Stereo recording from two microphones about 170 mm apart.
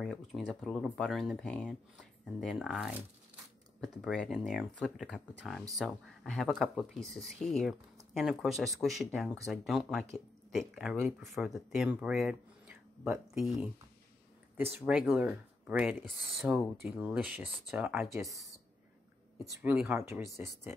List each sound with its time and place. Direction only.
0.0 s speech: centre (ahead or behind)
14.8 s speech: centre (ahead or behind)
18.1 s speech: 20° right (ahead or behind)
19.3 s speech: 5° right (ahead or behind)